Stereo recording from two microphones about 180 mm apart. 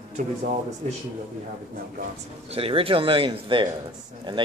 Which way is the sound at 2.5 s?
30° right (ahead or behind).